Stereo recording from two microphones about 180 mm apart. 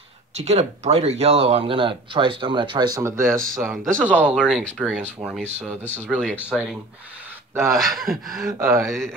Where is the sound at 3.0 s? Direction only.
15° right (ahead or behind).